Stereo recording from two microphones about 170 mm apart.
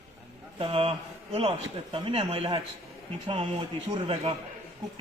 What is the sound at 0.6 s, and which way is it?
A man's voice, 35° right (ahead or behind).